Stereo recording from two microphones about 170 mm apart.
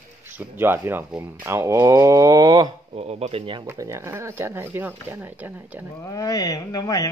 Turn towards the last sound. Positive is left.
turn(degrees=20)  # may be behind; listen again after turning